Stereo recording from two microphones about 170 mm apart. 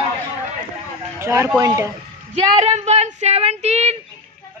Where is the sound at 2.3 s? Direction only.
40° right (ahead or behind).